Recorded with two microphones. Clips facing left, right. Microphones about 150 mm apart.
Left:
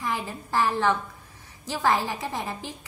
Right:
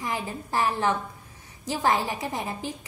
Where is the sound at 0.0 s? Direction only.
20° right (ahead or behind).